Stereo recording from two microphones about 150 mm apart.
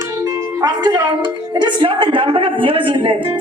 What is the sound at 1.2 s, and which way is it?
A woman's voice, 30° right (ahead or behind).